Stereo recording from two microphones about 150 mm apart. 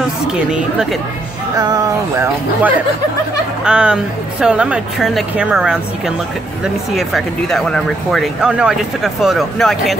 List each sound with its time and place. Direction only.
0.3 s speech: 5° right (ahead or behind)
1.6 s music: 25° right (ahead or behind)
3.6 s speech: 5° right (ahead or behind)